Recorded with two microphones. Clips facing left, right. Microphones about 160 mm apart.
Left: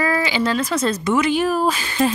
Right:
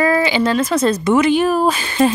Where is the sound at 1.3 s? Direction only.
60° right (ahead or behind).